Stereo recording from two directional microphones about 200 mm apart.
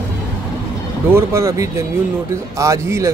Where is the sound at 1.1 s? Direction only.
15° right (ahead or behind).